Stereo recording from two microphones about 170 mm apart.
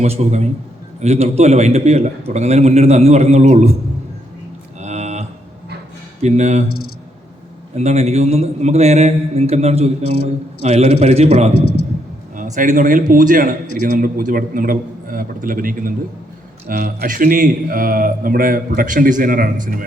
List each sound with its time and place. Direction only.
0.0 s a man's voice: 40° right (ahead or behind)
4.8 s cattle: 40° right (ahead or behind)
6.2 s a man's voice: 40° right (ahead or behind)
7.8 s a man's voice: 40° right (ahead or behind); by 19.8 s 55° right (ahead or behind)